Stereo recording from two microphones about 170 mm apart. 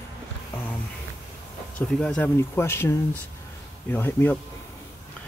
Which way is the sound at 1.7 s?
5° left (ahead or behind).